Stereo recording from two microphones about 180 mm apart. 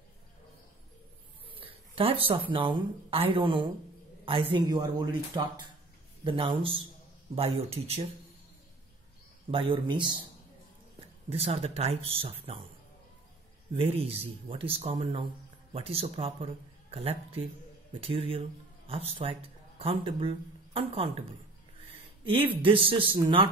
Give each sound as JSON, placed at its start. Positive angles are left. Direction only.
{"t": 1.5, "sound": "a man's voice", "side_deg": -30}
{"t": 9.5, "sound": "speech", "side_deg": -30}
{"t": 11.2, "sound": "speech", "side_deg": -35}
{"t": 13.7, "sound": "speech", "side_deg": -35}
{"t": 18.9, "sound": "a man's voice", "side_deg": -35}